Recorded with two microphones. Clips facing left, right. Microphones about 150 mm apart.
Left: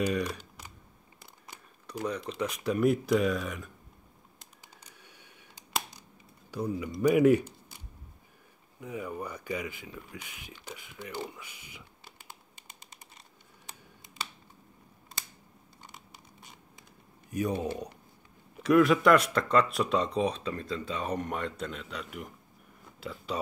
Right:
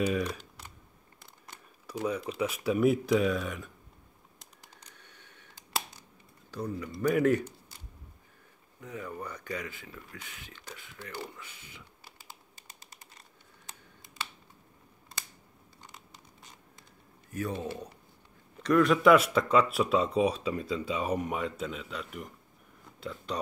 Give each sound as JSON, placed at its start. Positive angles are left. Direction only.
{"t": 0.0, "sound": "speech", "side_deg": 5}
{"t": 1.9, "sound": "speech", "side_deg": -5}
{"t": 4.4, "sound": "computer keyboard", "side_deg": 10}
{"t": 6.5, "sound": "speech", "side_deg": 10}
{"t": 8.8, "sound": "speech", "side_deg": 10}
{"t": 17.3, "sound": "speech", "side_deg": 15}
{"t": 18.6, "sound": "speech", "side_deg": 5}